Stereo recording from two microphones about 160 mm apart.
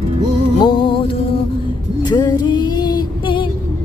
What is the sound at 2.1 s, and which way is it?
Music, 25° left (ahead or behind).